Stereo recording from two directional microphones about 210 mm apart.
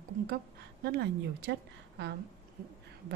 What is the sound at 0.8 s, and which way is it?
Speech, 50° right (ahead or behind).